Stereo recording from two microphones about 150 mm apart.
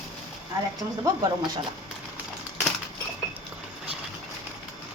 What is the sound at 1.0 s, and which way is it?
Speech, 30° right (ahead or behind).